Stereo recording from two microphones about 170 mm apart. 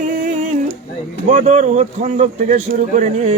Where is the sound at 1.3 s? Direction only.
45° right (ahead or behind).